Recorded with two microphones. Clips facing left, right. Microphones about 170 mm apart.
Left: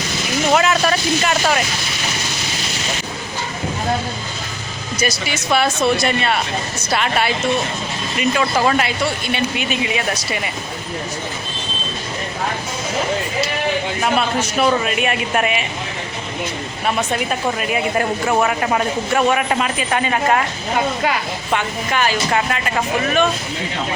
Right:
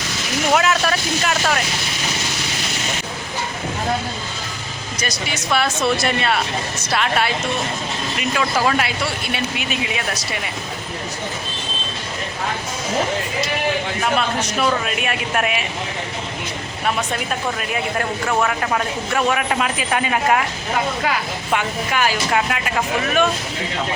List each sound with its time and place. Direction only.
0.5 s speech: centre (ahead or behind)
4.9 s speech: 5° left (ahead or behind)
14.2 s speech: 5° left (ahead or behind)
17.9 s speech: 10° left (ahead or behind)
21.5 s speech: 5° right (ahead or behind)